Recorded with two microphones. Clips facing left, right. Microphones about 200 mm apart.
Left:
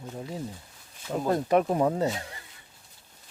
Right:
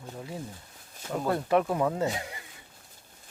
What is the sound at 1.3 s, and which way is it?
Speech, 20° left (ahead or behind).